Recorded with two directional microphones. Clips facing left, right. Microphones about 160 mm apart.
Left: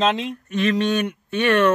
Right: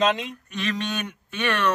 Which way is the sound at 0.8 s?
35° left (ahead or behind).